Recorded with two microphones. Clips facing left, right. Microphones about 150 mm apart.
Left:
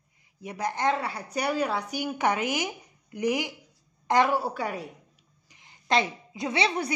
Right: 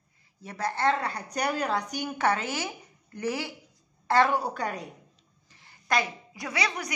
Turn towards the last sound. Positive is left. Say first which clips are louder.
# left 5 dB
turn(degrees=25)  # may be behind; listen again after turning